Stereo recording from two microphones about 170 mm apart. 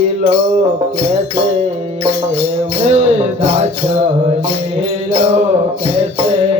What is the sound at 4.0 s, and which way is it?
Speech, 35° right (ahead or behind).